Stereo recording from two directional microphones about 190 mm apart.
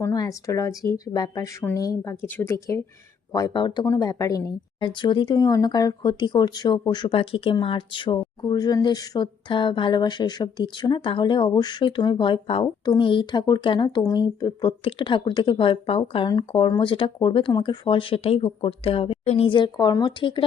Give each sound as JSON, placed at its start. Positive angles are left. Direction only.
{"t": 0.0, "sound": "speech", "side_deg": 15}